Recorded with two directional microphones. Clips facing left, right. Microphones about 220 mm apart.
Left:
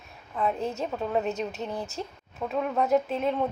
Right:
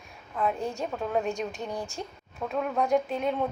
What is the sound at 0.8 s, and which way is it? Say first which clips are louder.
Speech: left 1 dB; 5° left (ahead or behind).